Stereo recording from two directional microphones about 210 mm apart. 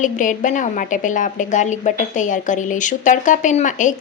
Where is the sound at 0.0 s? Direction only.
35° left (ahead or behind).